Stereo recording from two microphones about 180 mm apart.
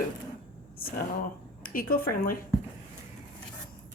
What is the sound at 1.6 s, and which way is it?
Speech, 55° left (ahead or behind).